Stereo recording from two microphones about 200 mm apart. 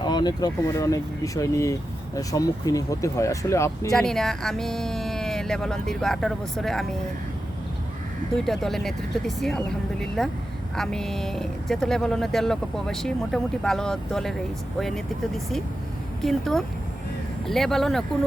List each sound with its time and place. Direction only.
0.0 s speech: 20° left (ahead or behind)
3.9 s speech: centre (ahead or behind)
8.4 s speech: centre (ahead or behind)
16.2 s speech: centre (ahead or behind)